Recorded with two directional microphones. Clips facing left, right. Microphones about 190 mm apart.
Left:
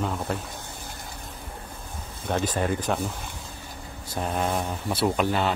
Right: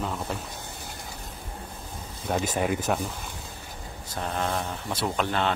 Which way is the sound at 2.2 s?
10° right (ahead or behind).